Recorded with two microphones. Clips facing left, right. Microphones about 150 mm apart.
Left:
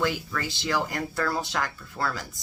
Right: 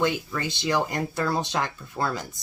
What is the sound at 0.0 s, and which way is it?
Speech, 20° right (ahead or behind).